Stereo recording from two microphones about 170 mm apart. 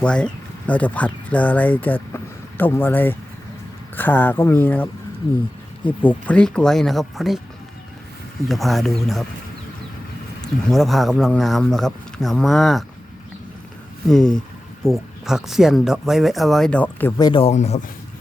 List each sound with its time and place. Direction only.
0.0 s speech: 5° left (ahead or behind)
8.4 s speech: centre (ahead or behind)
10.4 s speech: centre (ahead or behind)
14.1 s speech: 5° left (ahead or behind)
17.2 s speech: 25° left (ahead or behind)
17.4 s speech: 40° left (ahead or behind)